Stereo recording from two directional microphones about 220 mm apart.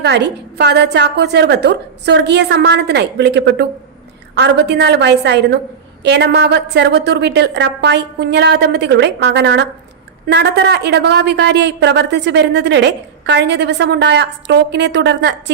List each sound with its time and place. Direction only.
0.0 s a woman's voice: 50° right (ahead or behind)